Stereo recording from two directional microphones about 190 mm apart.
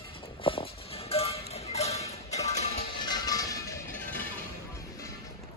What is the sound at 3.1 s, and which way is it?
Music, 20° left (ahead or behind).